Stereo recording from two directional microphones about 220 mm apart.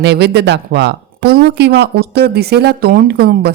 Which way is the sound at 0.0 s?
50° right (ahead or behind).